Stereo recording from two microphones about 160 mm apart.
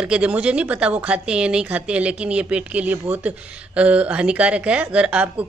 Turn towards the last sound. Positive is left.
turn(degrees=-5)  # may be behind; listen again after turning